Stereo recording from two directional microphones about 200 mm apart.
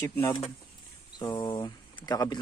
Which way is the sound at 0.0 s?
15° left (ahead or behind).